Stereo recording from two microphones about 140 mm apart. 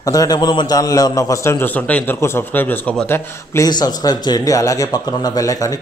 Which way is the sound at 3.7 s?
30° left (ahead or behind).